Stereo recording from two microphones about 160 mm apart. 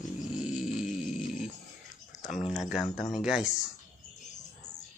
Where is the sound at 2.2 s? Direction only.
50° left (ahead or behind).